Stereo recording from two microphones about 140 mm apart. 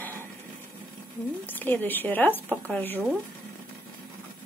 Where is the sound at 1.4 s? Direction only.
15° left (ahead or behind).